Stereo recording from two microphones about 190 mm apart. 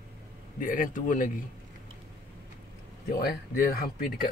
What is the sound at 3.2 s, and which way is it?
Speech, 50° left (ahead or behind).